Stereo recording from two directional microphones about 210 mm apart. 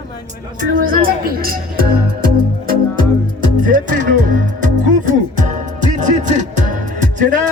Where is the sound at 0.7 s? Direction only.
40° right (ahead or behind).